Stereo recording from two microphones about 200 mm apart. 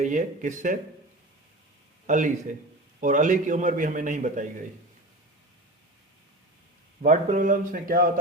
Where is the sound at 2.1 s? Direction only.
40° right (ahead or behind).